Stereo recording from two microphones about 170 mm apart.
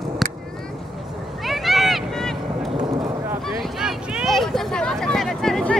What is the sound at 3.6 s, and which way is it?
Vehicle, 5° right (ahead or behind).